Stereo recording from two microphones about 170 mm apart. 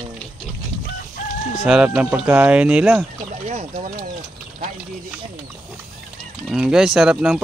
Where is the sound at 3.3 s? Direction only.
45° right (ahead or behind).